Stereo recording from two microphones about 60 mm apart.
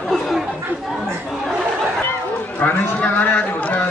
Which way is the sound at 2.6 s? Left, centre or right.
Left.